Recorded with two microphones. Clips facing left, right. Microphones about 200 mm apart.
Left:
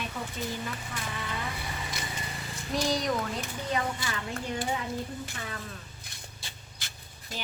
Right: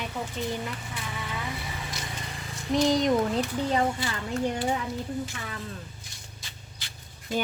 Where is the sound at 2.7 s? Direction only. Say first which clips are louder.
Right 6 dB; 20° right (ahead or behind).